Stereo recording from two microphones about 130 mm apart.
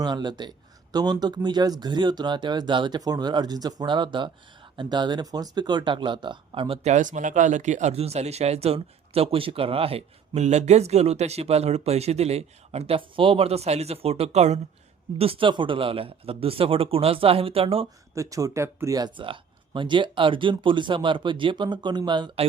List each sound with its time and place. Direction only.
0.0 s speech: 35° right (ahead or behind)
6.8 s speech: 70° right (ahead or behind)
15.2 s speech: 45° right (ahead or behind)
18.1 s speech: 25° right (ahead or behind)